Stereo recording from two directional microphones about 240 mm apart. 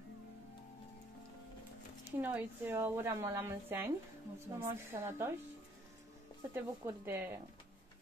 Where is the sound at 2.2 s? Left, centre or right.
Centre.